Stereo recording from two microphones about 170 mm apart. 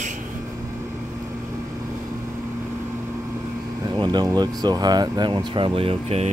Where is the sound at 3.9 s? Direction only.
25° right (ahead or behind).